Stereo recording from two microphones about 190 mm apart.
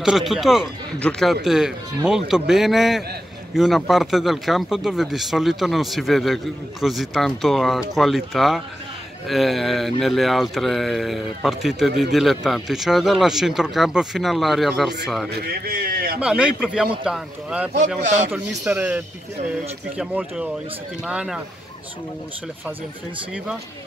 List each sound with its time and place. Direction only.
0.0 s speech: centre (ahead or behind)
15.4 s a man's voice: 55° right (ahead or behind)
16.2 s speech: 5° right (ahead or behind)
17.7 s a man's voice: 40° right (ahead or behind)
18.6 s a man's voice: 10° right (ahead or behind)